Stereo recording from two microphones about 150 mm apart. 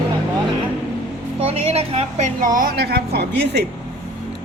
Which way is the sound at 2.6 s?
85° right.